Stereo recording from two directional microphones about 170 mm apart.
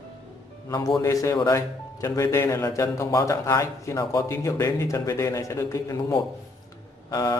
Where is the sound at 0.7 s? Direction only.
20° left (ahead or behind).